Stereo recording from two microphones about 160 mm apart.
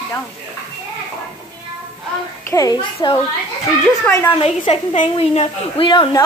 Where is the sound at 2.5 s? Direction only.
25° left (ahead or behind).